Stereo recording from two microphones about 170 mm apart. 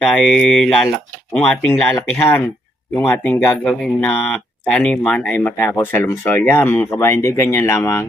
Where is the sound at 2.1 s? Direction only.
15° left (ahead or behind).